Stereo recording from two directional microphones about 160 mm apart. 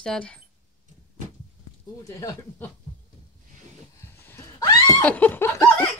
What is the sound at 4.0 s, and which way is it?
Dog, 15° left (ahead or behind).